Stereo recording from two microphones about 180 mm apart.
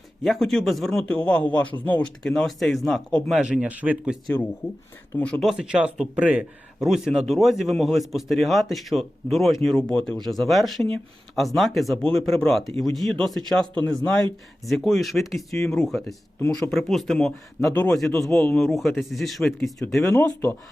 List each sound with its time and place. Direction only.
0.2 s speech: centre (ahead or behind)
1.5 s speech: 25° left (ahead or behind)
2.2 s speech: centre (ahead or behind)
5.2 s speech: 5° left (ahead or behind)
17.6 s a man's voice: 15° left (ahead or behind)
18.3 s speech: centre (ahead or behind)